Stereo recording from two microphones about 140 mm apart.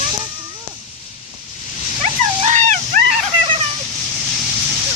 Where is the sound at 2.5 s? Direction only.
60° right (ahead or behind).